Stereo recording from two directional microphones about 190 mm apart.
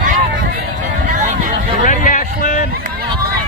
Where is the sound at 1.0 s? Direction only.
40° right (ahead or behind).